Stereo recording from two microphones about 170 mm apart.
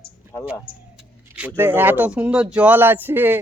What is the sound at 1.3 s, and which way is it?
Speech, 10° right (ahead or behind).